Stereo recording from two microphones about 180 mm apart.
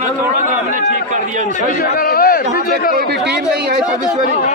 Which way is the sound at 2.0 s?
55° left (ahead or behind).